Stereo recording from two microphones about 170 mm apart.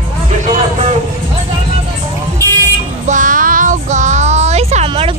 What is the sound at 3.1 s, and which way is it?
Child singing, 50° right (ahead or behind).